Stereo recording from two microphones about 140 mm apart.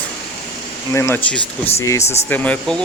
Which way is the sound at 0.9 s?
20° left (ahead or behind).